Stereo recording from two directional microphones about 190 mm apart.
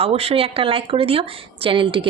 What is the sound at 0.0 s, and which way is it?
A woman's voice, 30° right (ahead or behind).